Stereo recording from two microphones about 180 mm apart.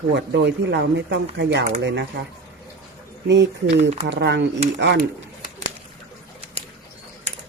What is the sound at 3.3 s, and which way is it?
Speech, 75° right (ahead or behind).